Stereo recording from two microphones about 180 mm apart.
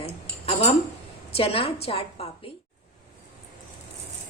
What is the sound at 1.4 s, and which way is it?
Speech, 30° left (ahead or behind).